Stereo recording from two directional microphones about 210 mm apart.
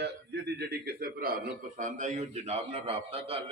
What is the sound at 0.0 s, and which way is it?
A man's voice, 50° right (ahead or behind).